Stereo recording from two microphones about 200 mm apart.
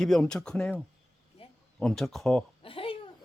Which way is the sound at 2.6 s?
25° left (ahead or behind).